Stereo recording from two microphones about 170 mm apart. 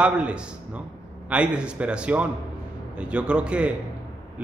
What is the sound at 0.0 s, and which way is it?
A man's voice, 5° right (ahead or behind).